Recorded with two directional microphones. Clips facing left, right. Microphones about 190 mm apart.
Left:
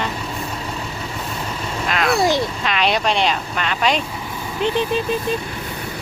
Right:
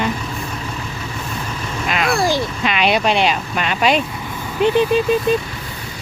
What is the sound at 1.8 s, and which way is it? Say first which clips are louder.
Speech: even; 5° right (ahead or behind).